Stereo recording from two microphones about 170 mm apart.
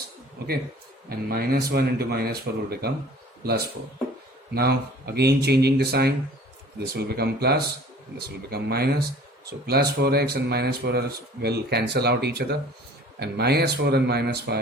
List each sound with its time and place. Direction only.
1.3 s speech: 60° right (ahead or behind)
4.5 s speech: 70° right (ahead or behind)